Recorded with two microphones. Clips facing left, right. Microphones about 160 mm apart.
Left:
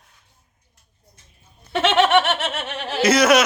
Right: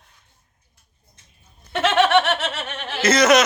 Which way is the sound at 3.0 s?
10° left (ahead or behind).